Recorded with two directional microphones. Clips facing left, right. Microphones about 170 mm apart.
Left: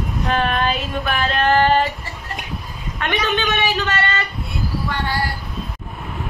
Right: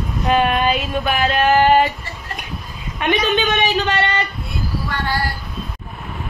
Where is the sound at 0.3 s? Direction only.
15° right (ahead or behind).